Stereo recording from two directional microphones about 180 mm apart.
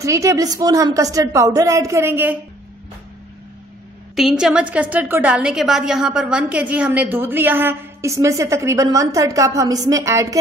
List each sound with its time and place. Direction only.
0.0 s a woman's voice: 15° right (ahead or behind)
4.1 s a woman's voice: centre (ahead or behind)